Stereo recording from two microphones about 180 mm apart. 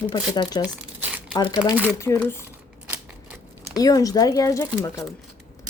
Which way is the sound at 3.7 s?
20° left (ahead or behind).